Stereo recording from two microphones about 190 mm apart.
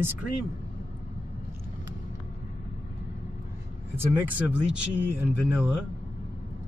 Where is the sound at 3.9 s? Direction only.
10° right (ahead or behind).